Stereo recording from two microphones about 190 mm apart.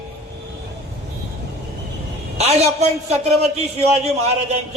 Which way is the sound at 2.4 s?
35° right (ahead or behind).